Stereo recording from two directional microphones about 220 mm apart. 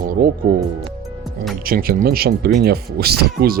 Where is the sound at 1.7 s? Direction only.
40° right (ahead or behind).